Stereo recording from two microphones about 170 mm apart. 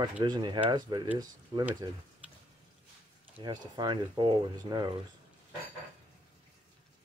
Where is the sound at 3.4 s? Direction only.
25° right (ahead or behind).